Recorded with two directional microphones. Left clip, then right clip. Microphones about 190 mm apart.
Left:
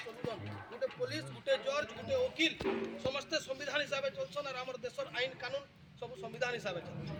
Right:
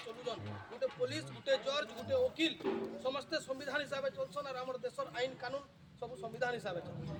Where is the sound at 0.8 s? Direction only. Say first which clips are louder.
Right 1 dB; 15° left (ahead or behind).